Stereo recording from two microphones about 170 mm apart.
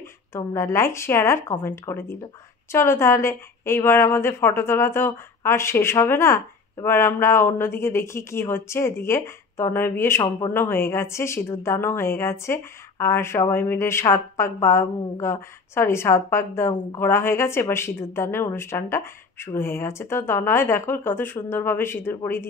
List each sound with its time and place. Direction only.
0.3 s speech: 15° left (ahead or behind)